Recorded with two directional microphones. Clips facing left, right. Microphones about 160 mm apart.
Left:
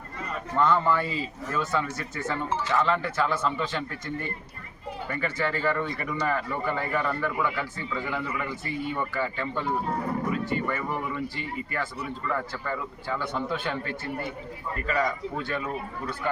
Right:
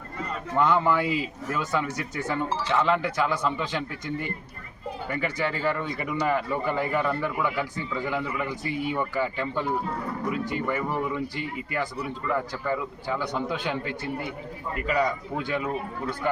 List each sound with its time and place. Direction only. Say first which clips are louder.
0.5 s speech: right 1 dB; 15° right (ahead or behind)